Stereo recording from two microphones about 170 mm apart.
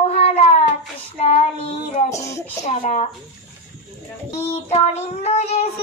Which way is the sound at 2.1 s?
15° left (ahead or behind).